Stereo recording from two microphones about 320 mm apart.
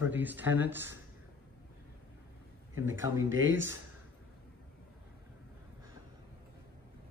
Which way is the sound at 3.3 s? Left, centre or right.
Right.